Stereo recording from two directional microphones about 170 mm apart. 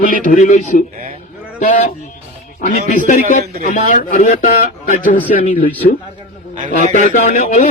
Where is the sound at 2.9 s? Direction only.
50° left (ahead or behind).